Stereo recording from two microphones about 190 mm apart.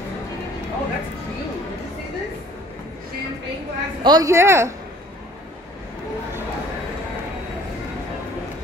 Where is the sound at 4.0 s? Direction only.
20° right (ahead or behind).